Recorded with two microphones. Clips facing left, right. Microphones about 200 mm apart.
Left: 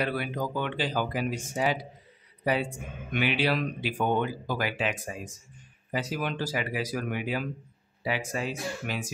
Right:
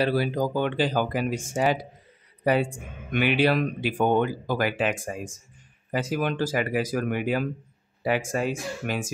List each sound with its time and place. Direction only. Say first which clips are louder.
0.0 s speech: right 6 dB; 35° right (ahead or behind); by 9.1 s 50° right (ahead or behind)